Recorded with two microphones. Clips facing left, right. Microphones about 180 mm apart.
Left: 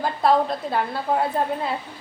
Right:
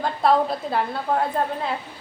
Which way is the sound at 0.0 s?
Centre (ahead or behind).